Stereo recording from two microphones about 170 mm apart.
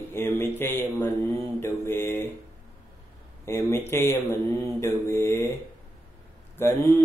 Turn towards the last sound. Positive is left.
turn(degrees=15)  # may be behind; listen again after turning